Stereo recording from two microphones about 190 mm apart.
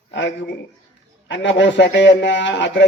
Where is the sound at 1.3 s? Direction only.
70° left (ahead or behind).